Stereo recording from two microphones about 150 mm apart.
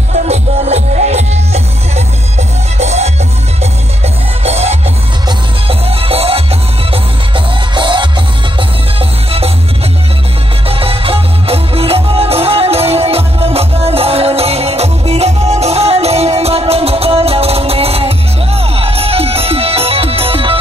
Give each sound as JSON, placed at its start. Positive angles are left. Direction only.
{"t": 0.1, "sound": "music", "side_deg": -45}
{"t": 4.4, "sound": "music", "side_deg": -45}
{"t": 10.7, "sound": "music", "side_deg": -40}